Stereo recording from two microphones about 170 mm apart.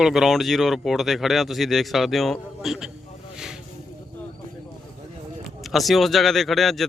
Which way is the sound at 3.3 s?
5° right (ahead or behind).